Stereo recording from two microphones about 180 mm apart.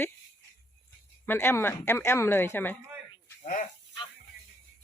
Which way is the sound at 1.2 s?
10° left (ahead or behind).